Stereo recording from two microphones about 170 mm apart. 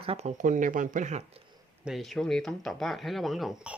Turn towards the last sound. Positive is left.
turn(degrees=-5)  # may be behind; listen again after turning